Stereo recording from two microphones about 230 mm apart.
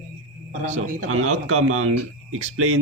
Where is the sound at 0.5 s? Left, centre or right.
Right.